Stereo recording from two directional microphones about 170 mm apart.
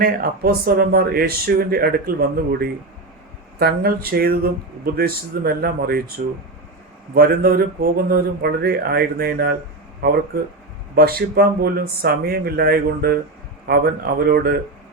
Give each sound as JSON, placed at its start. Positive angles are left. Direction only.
{"t": 0.0, "sound": "speech", "side_deg": -60}